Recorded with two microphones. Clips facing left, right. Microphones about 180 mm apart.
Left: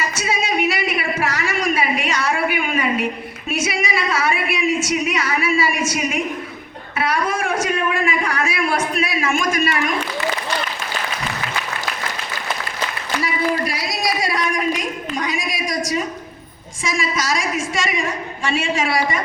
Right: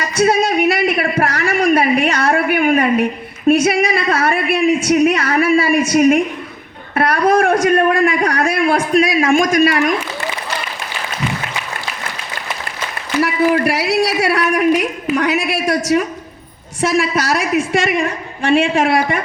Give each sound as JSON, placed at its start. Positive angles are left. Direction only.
{"t": 0.2, "sound": "a sound", "side_deg": -55}
{"t": 3.5, "sound": "a man's voice", "side_deg": -55}
{"t": 13.2, "sound": "a man's voice", "side_deg": -70}